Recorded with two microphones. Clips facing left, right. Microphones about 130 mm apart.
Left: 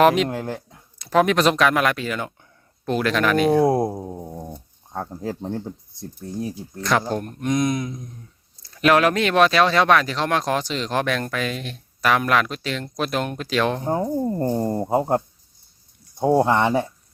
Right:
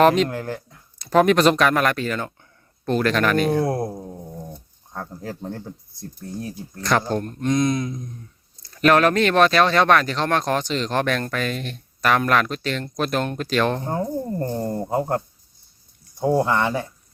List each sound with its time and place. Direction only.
0.0 s speech: 5° left (ahead or behind)
0.3 s speech: 20° left (ahead or behind)
0.9 s speech: centre (ahead or behind)
3.5 s speech: 20° left (ahead or behind); by 13.8 s 5° left (ahead or behind)
13.8 s speech: 15° left (ahead or behind)